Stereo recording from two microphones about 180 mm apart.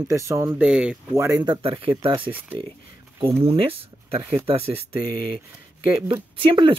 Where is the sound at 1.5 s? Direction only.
30° right (ahead or behind).